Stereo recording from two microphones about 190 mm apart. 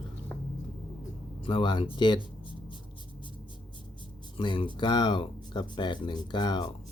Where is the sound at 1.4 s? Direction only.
25° left (ahead or behind).